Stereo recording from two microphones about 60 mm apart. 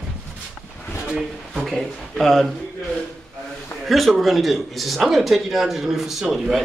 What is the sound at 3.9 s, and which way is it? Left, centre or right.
Speech, centre.